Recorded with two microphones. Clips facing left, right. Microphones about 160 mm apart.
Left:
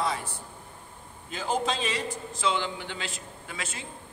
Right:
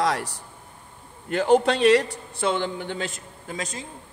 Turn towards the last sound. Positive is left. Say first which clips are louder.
# right 6 dB
turn(degrees=-40)  # may be behind; listen again after turning